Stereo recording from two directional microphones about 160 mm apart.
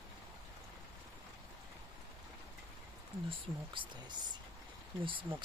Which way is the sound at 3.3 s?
30° right (ahead or behind).